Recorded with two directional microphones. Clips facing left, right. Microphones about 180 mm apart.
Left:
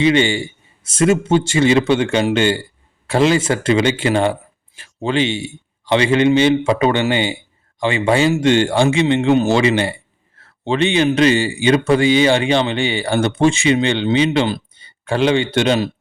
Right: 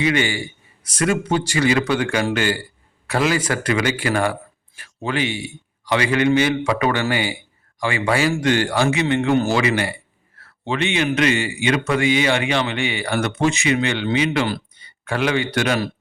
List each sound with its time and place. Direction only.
0.0 s a man's voice: 25° left (ahead or behind)